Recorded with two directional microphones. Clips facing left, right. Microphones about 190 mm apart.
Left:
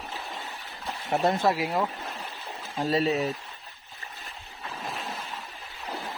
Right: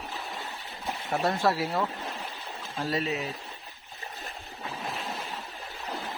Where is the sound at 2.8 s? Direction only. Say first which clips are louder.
Left 6 dB; 35° left (ahead or behind).